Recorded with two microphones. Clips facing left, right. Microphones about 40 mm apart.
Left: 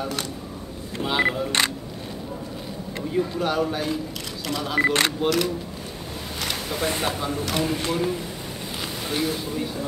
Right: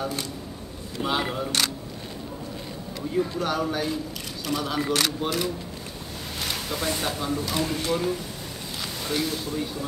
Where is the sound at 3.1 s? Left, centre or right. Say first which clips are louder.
Left 2 dB; centre.